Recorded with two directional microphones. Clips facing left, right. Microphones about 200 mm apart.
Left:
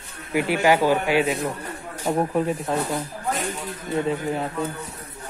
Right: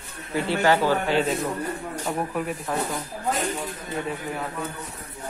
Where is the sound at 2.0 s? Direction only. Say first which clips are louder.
Left 7 dB; 25° left (ahead or behind).